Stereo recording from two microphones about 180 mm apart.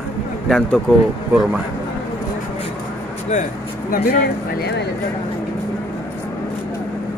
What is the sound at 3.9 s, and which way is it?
Speech, 55° left (ahead or behind).